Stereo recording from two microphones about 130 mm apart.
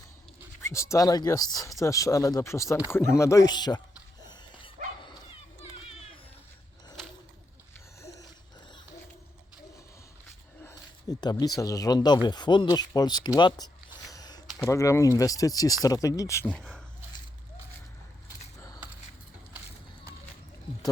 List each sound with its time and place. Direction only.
0.6 s speech: 20° left (ahead or behind)
4.2 s dog: 35° left (ahead or behind)
8.0 s a sound: 25° left (ahead or behind)
10.6 s a sound: 20° left (ahead or behind)
11.2 s speech: 30° left (ahead or behind)
16.5 s speech: 5° left (ahead or behind)